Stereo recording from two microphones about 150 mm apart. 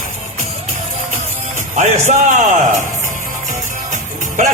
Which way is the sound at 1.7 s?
55° right (ahead or behind).